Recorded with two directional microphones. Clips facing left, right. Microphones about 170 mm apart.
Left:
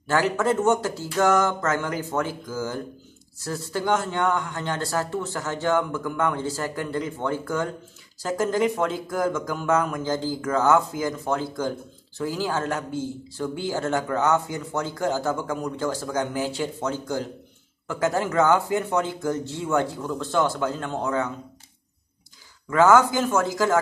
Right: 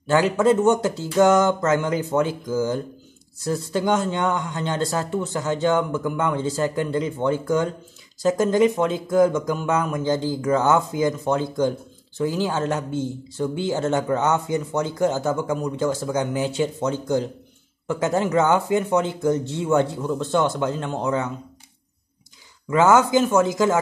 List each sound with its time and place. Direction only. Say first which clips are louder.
0.0 s speech: right 4 dB; 20° right (ahead or behind)
22.7 s speech: right 1 dB; 20° right (ahead or behind)